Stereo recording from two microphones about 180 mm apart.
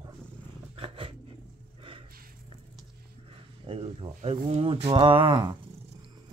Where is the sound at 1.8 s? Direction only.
30° right (ahead or behind).